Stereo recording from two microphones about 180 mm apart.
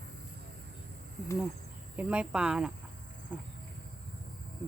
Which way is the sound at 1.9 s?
5° right (ahead or behind).